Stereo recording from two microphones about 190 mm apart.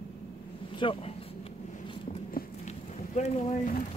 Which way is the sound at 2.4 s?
50° left (ahead or behind).